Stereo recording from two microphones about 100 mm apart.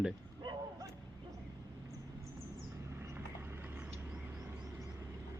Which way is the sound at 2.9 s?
20° right (ahead or behind).